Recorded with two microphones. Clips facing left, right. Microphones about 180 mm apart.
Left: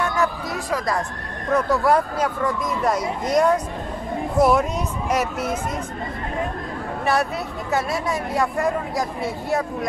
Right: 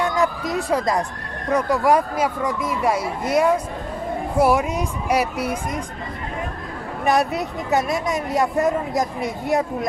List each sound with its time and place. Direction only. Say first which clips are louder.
0.0 s a sound: right 2 dB; 15° right (ahead or behind)
0.7 s speech: right 2 dB; 25° right (ahead or behind)
7.1 s speech: right 3 dB; 15° right (ahead or behind)